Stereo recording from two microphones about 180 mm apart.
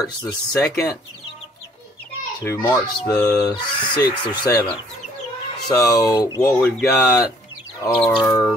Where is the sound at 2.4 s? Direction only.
10° left (ahead or behind).